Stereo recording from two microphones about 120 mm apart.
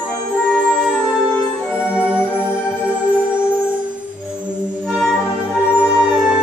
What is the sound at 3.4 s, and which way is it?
Music, 20° left (ahead or behind).